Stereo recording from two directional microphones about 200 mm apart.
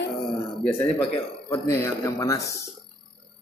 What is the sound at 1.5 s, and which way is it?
Speech, 15° left (ahead or behind).